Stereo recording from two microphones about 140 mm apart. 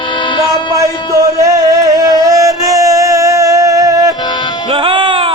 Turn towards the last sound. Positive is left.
turn(degrees=-40)  # may be behind; listen again after turning